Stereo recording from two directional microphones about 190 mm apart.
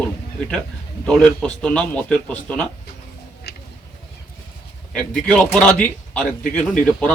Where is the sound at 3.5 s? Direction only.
55° left (ahead or behind).